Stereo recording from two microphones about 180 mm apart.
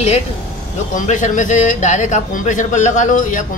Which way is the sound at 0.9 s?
45° left (ahead or behind).